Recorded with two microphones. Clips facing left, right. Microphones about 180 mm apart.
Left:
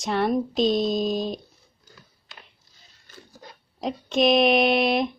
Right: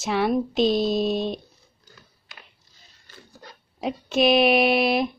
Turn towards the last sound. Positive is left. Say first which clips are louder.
# even
turn(degrees=-5)  # may be behind; listen again after turning